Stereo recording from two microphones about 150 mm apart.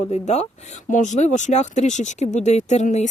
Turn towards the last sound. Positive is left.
turn(degrees=50)  # may be behind; listen again after turning